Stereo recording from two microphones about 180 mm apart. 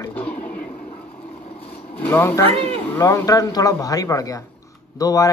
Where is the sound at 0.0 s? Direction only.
10° left (ahead or behind).